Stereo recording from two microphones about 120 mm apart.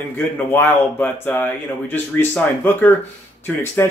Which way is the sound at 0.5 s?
15° left (ahead or behind).